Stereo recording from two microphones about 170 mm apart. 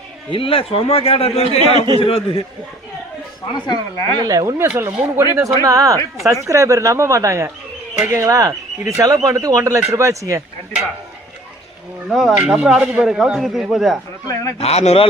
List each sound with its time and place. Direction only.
0.3 s a man's voice: 30° left (ahead or behind)
1.5 s a man's voice: 30° right (ahead or behind)
2.0 s a man's voice: 35° left (ahead or behind)
3.7 s speech: 20° left (ahead or behind)
4.2 s speech: 20° right (ahead or behind)
12.0 s speech: 5° right (ahead or behind)
14.6 s a man's voice: 40° left (ahead or behind)